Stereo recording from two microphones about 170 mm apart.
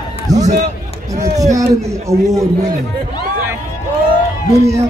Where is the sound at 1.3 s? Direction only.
20° right (ahead or behind).